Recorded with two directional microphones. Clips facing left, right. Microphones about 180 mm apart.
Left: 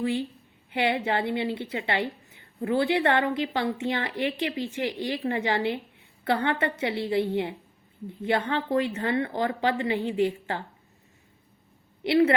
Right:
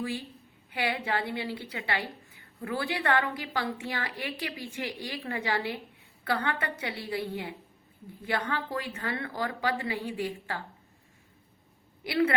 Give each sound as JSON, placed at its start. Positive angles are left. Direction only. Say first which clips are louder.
{"t": 0.0, "sound": "a woman's voice", "louder": "left 7 dB", "side_deg": 25}
{"t": 12.0, "sound": "a woman's voice", "louder": "left 6 dB", "side_deg": 25}